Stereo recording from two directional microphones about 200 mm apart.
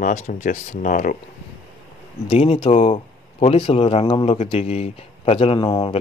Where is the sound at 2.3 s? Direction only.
30° left (ahead or behind).